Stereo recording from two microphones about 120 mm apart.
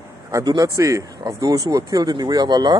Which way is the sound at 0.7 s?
25° right (ahead or behind).